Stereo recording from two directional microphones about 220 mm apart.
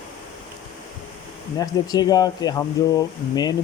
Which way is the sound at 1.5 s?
15° left (ahead or behind).